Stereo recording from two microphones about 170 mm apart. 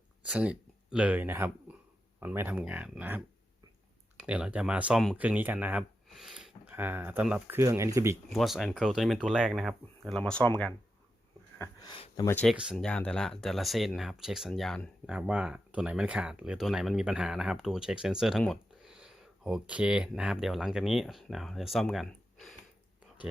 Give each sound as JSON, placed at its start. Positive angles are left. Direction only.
{"t": 0.3, "sound": "speech", "side_deg": -5}
{"t": 8.3, "sound": "speech", "side_deg": 0}
{"t": 11.8, "sound": "speech", "side_deg": 30}
{"t": 12.2, "sound": "speech", "side_deg": 15}
{"t": 12.5, "sound": "speech", "side_deg": 0}